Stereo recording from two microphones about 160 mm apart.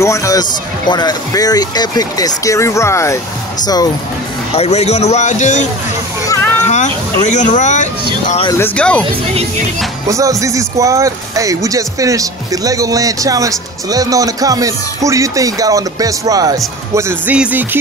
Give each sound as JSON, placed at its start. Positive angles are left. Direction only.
{"t": 0.0, "sound": "speech", "side_deg": 20}
{"t": 4.6, "sound": "a man's voice", "side_deg": 40}
{"t": 6.2, "sound": "children playing", "side_deg": 20}
{"t": 6.6, "sound": "a man's voice", "side_deg": 50}
{"t": 8.5, "sound": "speech", "side_deg": 15}
{"t": 10.0, "sound": "speech", "side_deg": -20}
{"t": 16.9, "sound": "speech", "side_deg": -10}